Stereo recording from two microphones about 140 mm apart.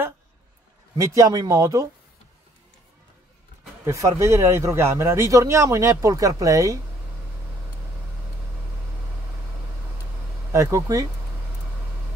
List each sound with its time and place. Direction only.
0.9 s speech: 20° right (ahead or behind)
3.8 s speech: 20° right (ahead or behind)
10.5 s speech: 20° right (ahead or behind)